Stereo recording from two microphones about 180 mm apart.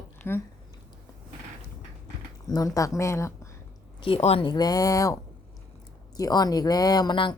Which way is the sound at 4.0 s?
35° left (ahead or behind).